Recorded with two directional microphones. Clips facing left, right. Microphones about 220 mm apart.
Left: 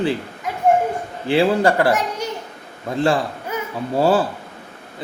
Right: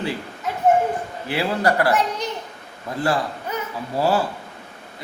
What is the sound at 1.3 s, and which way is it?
A man's voice, 25° left (ahead or behind).